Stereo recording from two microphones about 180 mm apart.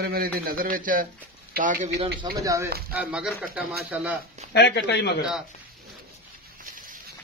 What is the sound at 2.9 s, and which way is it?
Speech, 5° right (ahead or behind).